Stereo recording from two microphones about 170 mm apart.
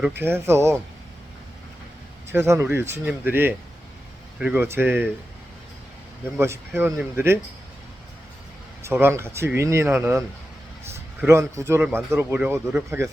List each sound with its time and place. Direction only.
0.2 s speech: 15° right (ahead or behind)
2.3 s speech: 15° right (ahead or behind)
6.3 s speech: 15° right (ahead or behind)
8.8 s speech: 15° right (ahead or behind)